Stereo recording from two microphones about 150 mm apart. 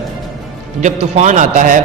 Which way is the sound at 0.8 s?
50° right (ahead or behind).